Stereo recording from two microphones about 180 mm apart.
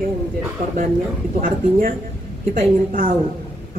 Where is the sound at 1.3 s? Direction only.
50° right (ahead or behind).